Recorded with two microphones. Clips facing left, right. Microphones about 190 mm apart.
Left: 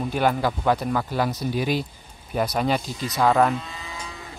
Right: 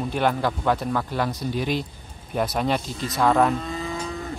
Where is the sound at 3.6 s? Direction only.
50° right (ahead or behind).